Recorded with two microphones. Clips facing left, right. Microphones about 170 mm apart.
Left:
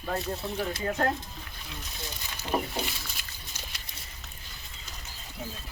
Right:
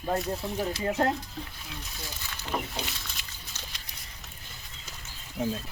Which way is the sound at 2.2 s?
15° left (ahead or behind).